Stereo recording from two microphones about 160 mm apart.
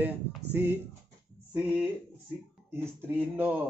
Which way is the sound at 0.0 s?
10° right (ahead or behind).